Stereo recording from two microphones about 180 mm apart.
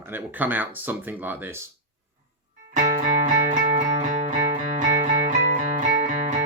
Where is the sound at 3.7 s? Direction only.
40° right (ahead or behind).